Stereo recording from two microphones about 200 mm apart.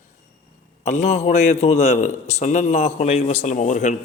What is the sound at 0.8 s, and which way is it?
A man's voice, 35° left (ahead or behind).